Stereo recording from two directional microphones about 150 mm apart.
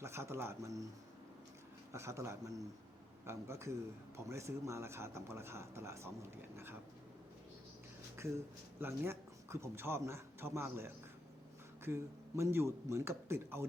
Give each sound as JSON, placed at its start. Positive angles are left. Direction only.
{"t": 0.0, "sound": "speech", "side_deg": -15}
{"t": 1.9, "sound": "speech", "side_deg": -20}
{"t": 8.8, "sound": "a man's voice", "side_deg": -15}